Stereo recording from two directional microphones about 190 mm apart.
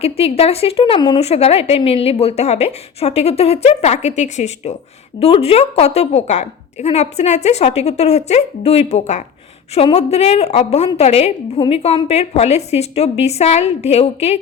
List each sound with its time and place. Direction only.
0.0 s a woman's voice: 30° left (ahead or behind)